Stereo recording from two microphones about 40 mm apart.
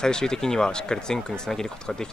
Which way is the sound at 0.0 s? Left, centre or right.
Centre.